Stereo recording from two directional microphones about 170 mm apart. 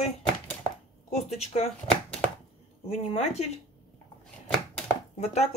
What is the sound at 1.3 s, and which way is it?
Speech, 40° left (ahead or behind).